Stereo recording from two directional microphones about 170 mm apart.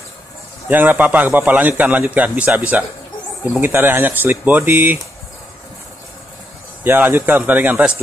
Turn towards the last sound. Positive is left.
turn(degrees=-10)  # may be behind; listen again after turning